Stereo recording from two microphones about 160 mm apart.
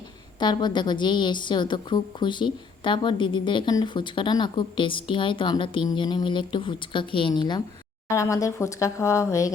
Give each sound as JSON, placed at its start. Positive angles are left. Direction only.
{"t": 0.3, "sound": "a woman's voice", "side_deg": 25}